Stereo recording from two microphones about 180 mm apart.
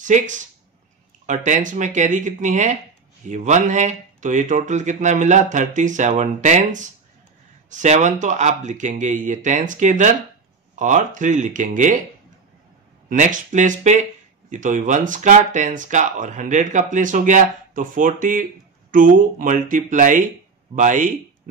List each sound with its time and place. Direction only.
0.1 s speech: 40° right (ahead or behind)
13.1 s speech: 45° right (ahead or behind)